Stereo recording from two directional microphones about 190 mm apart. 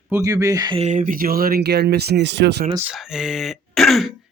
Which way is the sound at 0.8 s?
40° right (ahead or behind).